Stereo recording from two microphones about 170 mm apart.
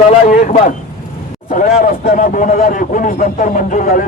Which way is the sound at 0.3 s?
45° left (ahead or behind).